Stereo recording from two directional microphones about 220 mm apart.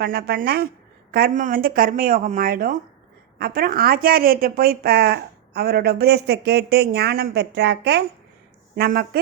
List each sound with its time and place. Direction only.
0.0 s speech: 45° right (ahead or behind)